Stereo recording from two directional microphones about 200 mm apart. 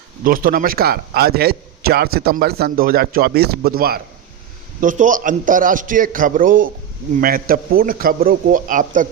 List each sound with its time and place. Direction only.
0.3 s a man's voice: 45° right (ahead or behind)